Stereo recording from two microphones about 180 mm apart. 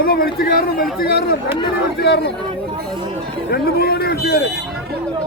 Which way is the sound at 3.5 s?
60° left (ahead or behind).